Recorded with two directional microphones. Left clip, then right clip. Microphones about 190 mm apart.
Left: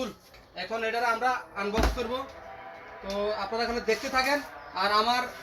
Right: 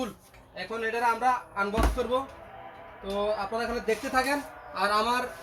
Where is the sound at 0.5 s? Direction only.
15° right (ahead or behind).